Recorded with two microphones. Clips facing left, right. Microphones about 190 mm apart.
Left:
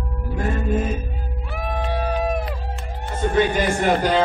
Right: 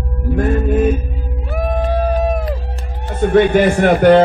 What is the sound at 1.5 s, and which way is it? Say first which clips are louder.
Music: right 8 dB; 45° right (ahead or behind).